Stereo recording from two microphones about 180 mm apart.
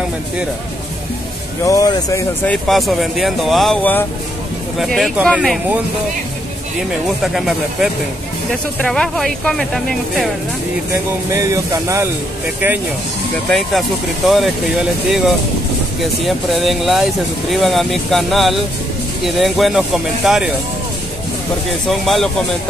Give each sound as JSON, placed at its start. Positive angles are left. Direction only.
{"t": 1.7, "sound": "speech", "side_deg": 20}
{"t": 2.4, "sound": "speech", "side_deg": 5}
{"t": 7.1, "sound": "speech", "side_deg": 0}
{"t": 11.2, "sound": "speech", "side_deg": -20}
{"t": 13.5, "sound": "speech", "side_deg": 0}
{"t": 21.6, "sound": "speech", "side_deg": 0}